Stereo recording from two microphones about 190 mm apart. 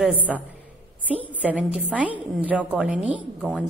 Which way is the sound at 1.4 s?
5° right (ahead or behind).